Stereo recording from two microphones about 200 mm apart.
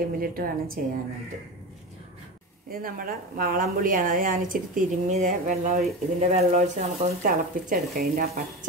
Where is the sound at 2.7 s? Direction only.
45° right (ahead or behind).